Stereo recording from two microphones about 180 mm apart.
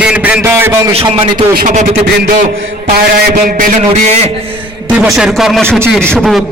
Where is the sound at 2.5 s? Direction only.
90° right.